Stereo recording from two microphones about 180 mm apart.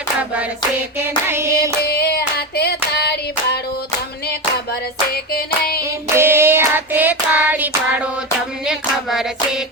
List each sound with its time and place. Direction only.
0.9 s a sound: 15° right (ahead or behind)
1.8 s hands: 65° left (ahead or behind)
5.8 s hands: 15° right (ahead or behind)